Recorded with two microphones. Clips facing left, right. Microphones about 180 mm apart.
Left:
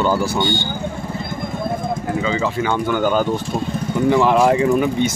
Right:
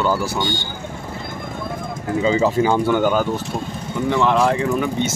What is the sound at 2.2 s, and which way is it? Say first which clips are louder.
Speech: right 7 dB; 35° right (ahead or behind).